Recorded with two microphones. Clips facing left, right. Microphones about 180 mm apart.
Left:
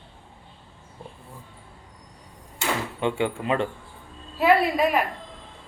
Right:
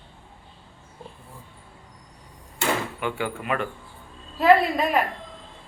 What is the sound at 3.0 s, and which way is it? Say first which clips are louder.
Speech: left 4 dB; 25° left (ahead or behind).